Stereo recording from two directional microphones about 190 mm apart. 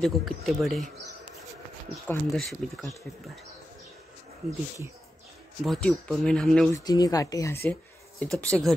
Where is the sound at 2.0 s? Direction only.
10° left (ahead or behind).